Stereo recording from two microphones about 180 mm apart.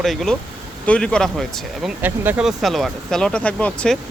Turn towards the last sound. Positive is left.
turn(degrees=5)  # may be behind; listen again after turning